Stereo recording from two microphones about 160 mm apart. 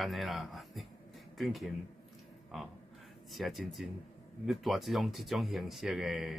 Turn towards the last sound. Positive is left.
turn(degrees=0)  # may be behind; listen again after turning